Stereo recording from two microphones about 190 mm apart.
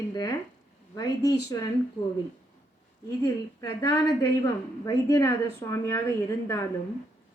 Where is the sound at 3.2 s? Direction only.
15° left (ahead or behind).